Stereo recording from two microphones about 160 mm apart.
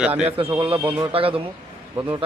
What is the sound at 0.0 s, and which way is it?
A man's voice, 10° right (ahead or behind).